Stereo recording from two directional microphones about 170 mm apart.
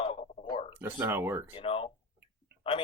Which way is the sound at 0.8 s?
15° right (ahead or behind).